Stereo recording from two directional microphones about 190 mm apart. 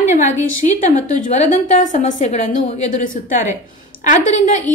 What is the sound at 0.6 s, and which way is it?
Speech, 40° left (ahead or behind).